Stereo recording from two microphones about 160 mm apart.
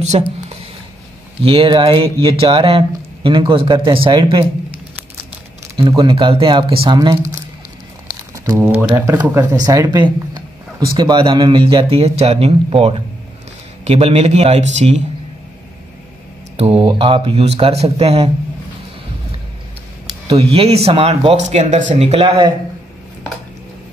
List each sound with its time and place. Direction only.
0.1 s speech: 35° right (ahead or behind)
1.4 s speech: 35° right (ahead or behind)
5.8 s speech: 25° right (ahead or behind)
8.5 s speech: 15° right (ahead or behind); by 15.0 s 45° right (ahead or behind)
16.5 s speech: 40° right (ahead or behind)
20.2 s speech: 35° right (ahead or behind)
22.0 s speech: 35° right (ahead or behind)